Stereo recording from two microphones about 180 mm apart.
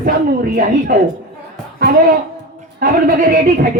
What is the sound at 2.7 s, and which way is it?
Speech, 50° right (ahead or behind).